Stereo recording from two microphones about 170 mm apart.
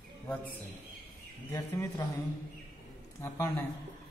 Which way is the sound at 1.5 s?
20° left (ahead or behind).